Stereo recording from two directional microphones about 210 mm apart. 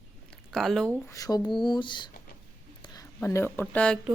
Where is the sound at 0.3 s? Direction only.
Centre (ahead or behind).